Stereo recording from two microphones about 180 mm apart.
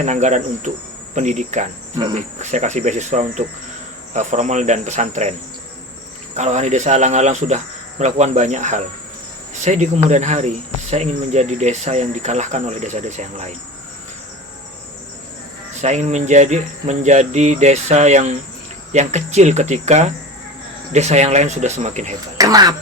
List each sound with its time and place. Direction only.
0.0 s cricket: 40° right (ahead or behind)
6.3 s cricket: 40° right (ahead or behind)
15.8 s cricket: 40° right (ahead or behind)
22.4 s speech: 20° right (ahead or behind)